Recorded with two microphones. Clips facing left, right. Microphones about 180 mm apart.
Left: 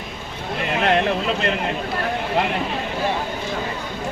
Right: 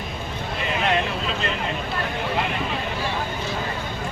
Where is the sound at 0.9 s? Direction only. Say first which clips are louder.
Left 6 dB; 60° left (ahead or behind).